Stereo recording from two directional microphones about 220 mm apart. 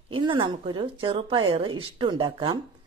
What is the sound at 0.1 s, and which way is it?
Speech, 20° right (ahead or behind).